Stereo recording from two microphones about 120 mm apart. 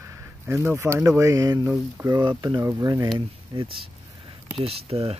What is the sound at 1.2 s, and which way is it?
Speech, 30° right (ahead or behind).